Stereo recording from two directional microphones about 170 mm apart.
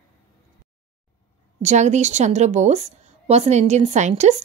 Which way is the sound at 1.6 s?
45° right (ahead or behind).